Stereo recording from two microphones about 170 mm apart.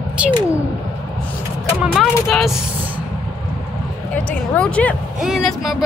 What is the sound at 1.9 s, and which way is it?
Vehicle, centre (ahead or behind).